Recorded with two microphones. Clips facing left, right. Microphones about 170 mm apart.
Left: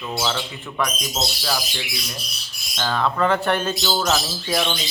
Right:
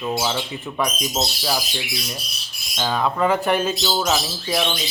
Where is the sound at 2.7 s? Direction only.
10° right (ahead or behind).